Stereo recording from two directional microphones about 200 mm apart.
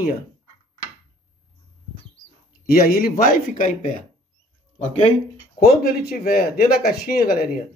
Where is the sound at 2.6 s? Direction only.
45° left (ahead or behind).